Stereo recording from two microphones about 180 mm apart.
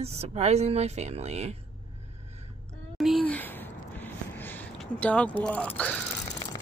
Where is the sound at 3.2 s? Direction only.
10° left (ahead or behind).